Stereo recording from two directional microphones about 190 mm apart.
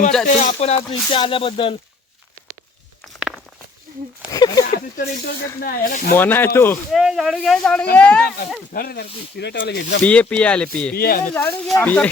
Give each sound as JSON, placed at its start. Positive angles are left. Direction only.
{"t": 0.3, "sound": "speech", "side_deg": 35}
{"t": 0.8, "sound": "speech", "side_deg": 25}
{"t": 3.2, "sound": "walk", "side_deg": -5}
{"t": 4.3, "sound": "speech", "side_deg": 20}
{"t": 4.7, "sound": "speech", "side_deg": 50}
{"t": 6.1, "sound": "speech", "side_deg": 10}
{"t": 6.9, "sound": "speech", "side_deg": -5}
{"t": 8.7, "sound": "speech", "side_deg": 55}
{"t": 10.0, "sound": "speech", "side_deg": 5}
{"t": 10.9, "sound": "speech", "side_deg": 50}
{"t": 11.3, "sound": "speech", "side_deg": 10}